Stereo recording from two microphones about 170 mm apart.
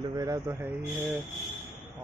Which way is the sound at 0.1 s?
20° right (ahead or behind).